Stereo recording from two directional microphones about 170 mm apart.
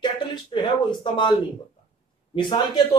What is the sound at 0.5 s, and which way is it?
Speech, 30° left (ahead or behind).